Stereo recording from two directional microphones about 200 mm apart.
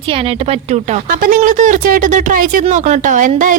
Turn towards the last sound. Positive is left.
turn(degrees=-40)  # may be behind; listen again after turning